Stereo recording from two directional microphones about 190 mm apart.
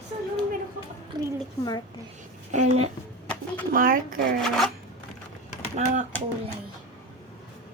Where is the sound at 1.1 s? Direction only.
20° right (ahead or behind).